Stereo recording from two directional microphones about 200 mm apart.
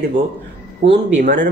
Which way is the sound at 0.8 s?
40° right (ahead or behind).